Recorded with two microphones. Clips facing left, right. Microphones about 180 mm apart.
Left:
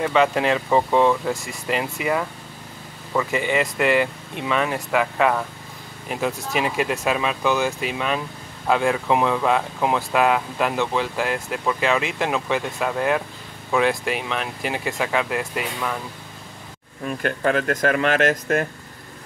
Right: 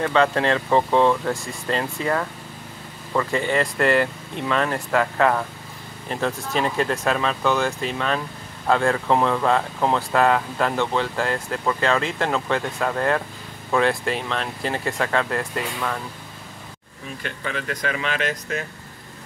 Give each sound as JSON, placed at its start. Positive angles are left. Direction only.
{"t": 0.0, "sound": "speech", "side_deg": 10}
{"t": 3.3, "sound": "speech", "side_deg": 15}
{"t": 17.0, "sound": "speech", "side_deg": 55}